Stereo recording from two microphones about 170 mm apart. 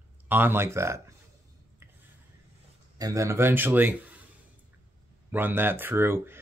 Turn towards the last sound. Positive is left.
turn(degrees=-15)  # may be behind; listen again after turning